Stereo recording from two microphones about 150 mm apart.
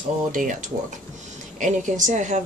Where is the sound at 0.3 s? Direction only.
60° right (ahead or behind).